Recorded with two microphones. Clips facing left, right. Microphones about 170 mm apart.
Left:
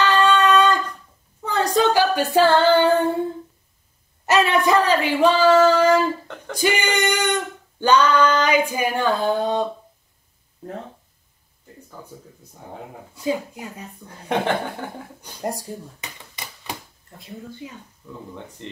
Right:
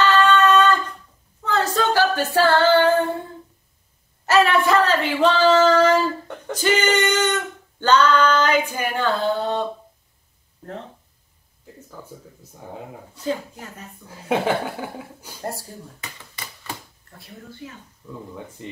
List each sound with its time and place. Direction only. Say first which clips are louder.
0.0 s a sound: right 1 dB; 15° left (ahead or behind)
1.4 s female singing: left 2 dB; 15° left (ahead or behind)
4.3 s female singing: even; 15° left (ahead or behind)
13.1 s female singing: left 2 dB; 10° left (ahead or behind)
14.0 s speech: right 1 dB; 5° right (ahead or behind)
15.4 s a sound: left 3 dB; 15° left (ahead or behind)
17.6 s female singing: left 1 dB; 15° left (ahead or behind)